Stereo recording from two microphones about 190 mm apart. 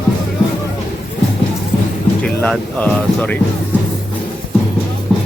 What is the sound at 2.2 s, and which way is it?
Speech, 5° left (ahead or behind).